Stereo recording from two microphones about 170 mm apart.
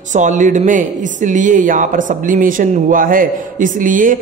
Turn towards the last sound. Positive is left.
turn(degrees=-50)  # may be behind; listen again after turning